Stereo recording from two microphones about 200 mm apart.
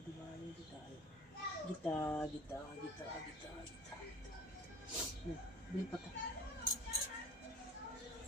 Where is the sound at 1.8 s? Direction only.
10° left (ahead or behind).